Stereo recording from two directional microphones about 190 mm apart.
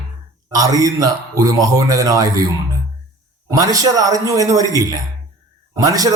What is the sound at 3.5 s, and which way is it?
Speech, 20° right (ahead or behind).